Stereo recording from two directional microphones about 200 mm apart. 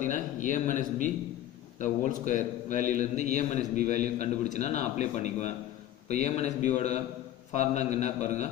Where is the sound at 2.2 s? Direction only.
40° left (ahead or behind).